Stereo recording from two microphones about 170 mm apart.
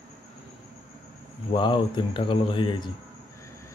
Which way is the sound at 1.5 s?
30° left (ahead or behind).